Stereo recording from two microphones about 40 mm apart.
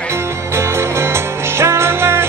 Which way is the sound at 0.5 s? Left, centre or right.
Right.